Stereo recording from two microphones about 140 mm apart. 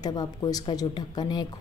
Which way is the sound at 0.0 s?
30° left (ahead or behind).